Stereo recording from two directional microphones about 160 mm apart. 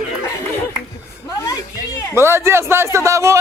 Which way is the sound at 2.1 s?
15° right (ahead or behind).